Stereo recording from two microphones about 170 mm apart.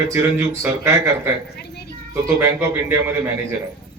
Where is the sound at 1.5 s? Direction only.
70° left (ahead or behind).